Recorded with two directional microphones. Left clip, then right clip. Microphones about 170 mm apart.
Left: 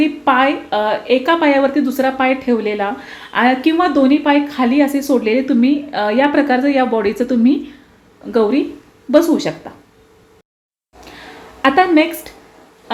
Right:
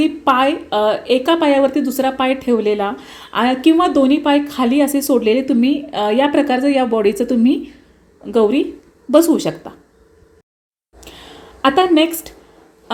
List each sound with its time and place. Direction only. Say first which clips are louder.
0.0 s a woman's voice: left 1 dB; 35° right (ahead or behind)
11.6 s a woman's voice: left 1 dB; 30° right (ahead or behind)